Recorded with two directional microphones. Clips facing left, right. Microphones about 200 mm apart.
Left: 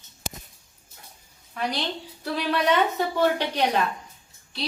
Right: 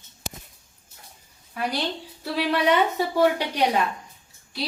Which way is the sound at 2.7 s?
10° right (ahead or behind).